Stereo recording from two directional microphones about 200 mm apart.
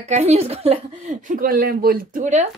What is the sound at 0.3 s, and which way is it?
Speech, 30° right (ahead or behind).